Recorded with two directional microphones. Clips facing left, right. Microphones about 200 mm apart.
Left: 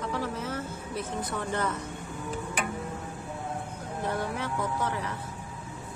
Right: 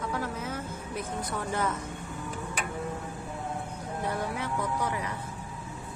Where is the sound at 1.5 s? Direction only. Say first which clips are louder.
Right 1 dB; 10° right (ahead or behind).